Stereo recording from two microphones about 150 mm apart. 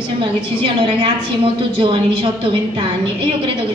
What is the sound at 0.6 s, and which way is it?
A woman's voice, 35° right (ahead or behind).